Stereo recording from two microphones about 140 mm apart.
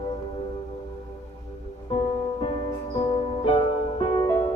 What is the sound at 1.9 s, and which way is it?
Music, 40° left (ahead or behind).